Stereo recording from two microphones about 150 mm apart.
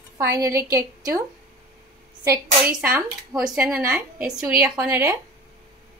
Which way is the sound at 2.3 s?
10° right (ahead or behind).